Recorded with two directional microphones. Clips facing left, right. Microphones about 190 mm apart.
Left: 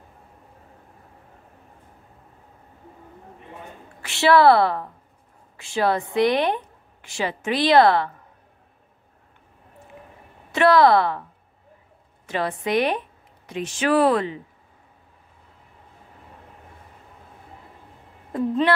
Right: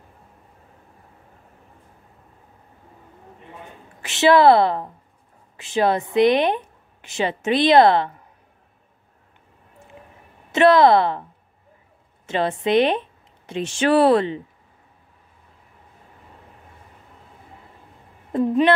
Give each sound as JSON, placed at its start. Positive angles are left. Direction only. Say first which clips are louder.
{"t": 4.0, "sound": "a woman's voice", "louder": "right 2 dB", "side_deg": -20}
{"t": 10.5, "sound": "a woman's voice", "louder": "right 2 dB", "side_deg": -20}
{"t": 12.3, "sound": "a woman's voice", "louder": "right 4 dB", "side_deg": -25}